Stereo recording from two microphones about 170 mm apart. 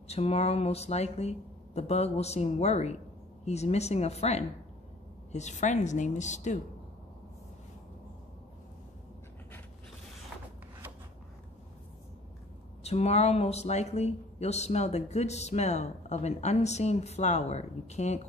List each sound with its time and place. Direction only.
0.1 s a woman's voice: 40° left (ahead or behind)
12.8 s speech: 40° left (ahead or behind)